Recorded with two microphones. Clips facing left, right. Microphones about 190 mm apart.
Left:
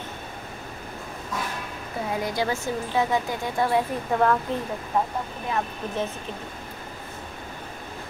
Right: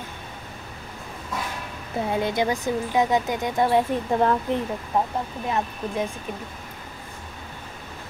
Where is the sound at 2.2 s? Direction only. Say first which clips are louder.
Right 2 dB; 20° right (ahead or behind).